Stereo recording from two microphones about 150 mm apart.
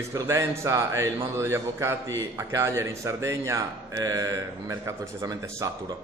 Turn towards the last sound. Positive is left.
turn(degrees=-20)  # may be behind; listen again after turning